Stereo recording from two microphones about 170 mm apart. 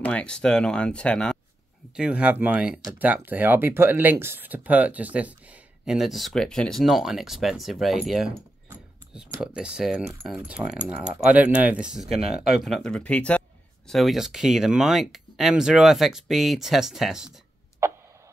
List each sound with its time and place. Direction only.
0.0 s speech: 5° left (ahead or behind)
2.0 s speech: 5° right (ahead or behind)
8.4 s keys jangling: 15° right (ahead or behind)
9.4 s speech: 5° right (ahead or behind)
17.8 s tick: 15° right (ahead or behind)